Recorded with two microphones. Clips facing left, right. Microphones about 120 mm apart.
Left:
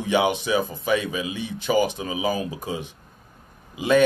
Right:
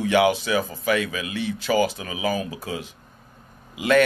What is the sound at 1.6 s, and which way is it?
Speech, 20° left (ahead or behind).